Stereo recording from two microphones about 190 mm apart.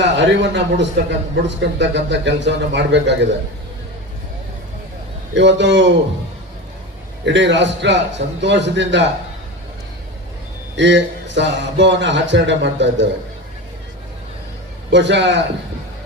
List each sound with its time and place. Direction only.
0.0 s a man's voice: 70° right (ahead or behind)
5.3 s a man's voice: 70° right (ahead or behind)
7.3 s a man's voice: 70° right (ahead or behind)
10.8 s a man's voice: 70° right (ahead or behind)
14.8 s a man's voice: 70° right (ahead or behind)